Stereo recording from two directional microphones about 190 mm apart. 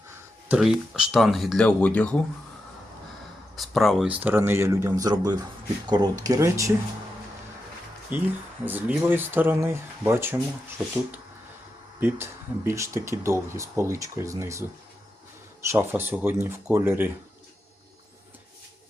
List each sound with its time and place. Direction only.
0.4 s speech: 5° right (ahead or behind)
3.5 s speech: centre (ahead or behind); by 6.7 s 15° right (ahead or behind)
8.1 s speech: 10° right (ahead or behind)
11.9 s speech: 10° right (ahead or behind)